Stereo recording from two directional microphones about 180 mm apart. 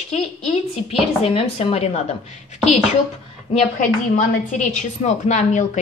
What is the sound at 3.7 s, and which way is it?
A woman's voice, 45° left (ahead or behind).